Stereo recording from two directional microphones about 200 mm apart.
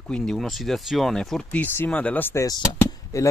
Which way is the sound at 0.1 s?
5° left (ahead or behind).